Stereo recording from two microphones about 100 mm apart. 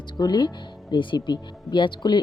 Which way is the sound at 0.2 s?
45° left (ahead or behind).